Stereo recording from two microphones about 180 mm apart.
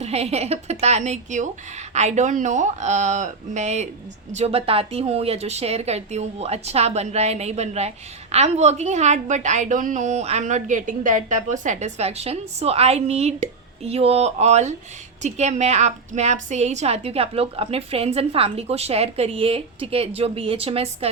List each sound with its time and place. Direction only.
0.0 s speech: 35° right (ahead or behind)